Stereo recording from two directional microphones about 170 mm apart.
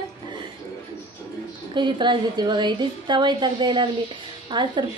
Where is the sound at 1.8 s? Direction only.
25° right (ahead or behind).